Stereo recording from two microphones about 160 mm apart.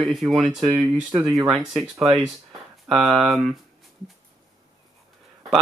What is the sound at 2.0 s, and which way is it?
Speech, 30° right (ahead or behind).